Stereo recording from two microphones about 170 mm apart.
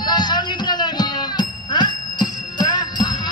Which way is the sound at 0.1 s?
25° left (ahead or behind).